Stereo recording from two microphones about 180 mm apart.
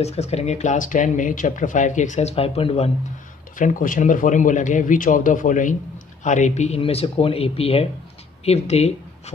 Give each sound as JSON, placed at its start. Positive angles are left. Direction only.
{"t": 0.0, "sound": "speech", "side_deg": 35}
{"t": 3.5, "sound": "a man's voice", "side_deg": 50}